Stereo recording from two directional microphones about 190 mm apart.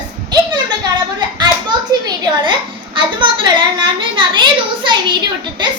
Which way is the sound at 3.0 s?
25° right (ahead or behind).